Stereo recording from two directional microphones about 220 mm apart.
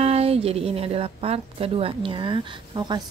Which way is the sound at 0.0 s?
25° right (ahead or behind).